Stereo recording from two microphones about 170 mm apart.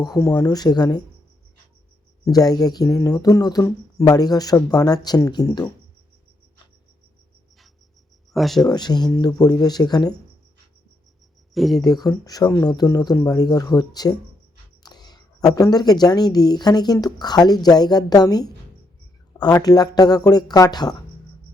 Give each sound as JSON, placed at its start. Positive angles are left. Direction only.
{"t": 0.0, "sound": "a woman's voice", "side_deg": 20}
{"t": 2.2, "sound": "a woman's voice", "side_deg": 20}
{"t": 8.3, "sound": "speech", "side_deg": 0}
{"t": 8.6, "sound": "a woman's voice", "side_deg": 25}
{"t": 11.5, "sound": "speech", "side_deg": 0}
{"t": 11.8, "sound": "a woman's voice", "side_deg": 25}